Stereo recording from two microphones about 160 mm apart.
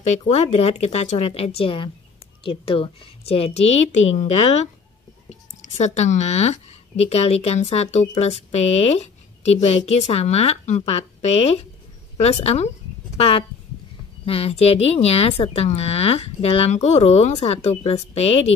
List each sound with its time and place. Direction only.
0.0 s speech: 45° left (ahead or behind)
5.6 s speech: 45° left (ahead or behind)